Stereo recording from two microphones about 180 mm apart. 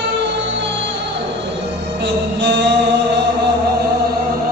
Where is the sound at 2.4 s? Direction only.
75° right (ahead or behind).